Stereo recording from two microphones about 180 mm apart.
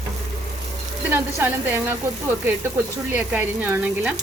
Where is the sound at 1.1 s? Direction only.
10° right (ahead or behind).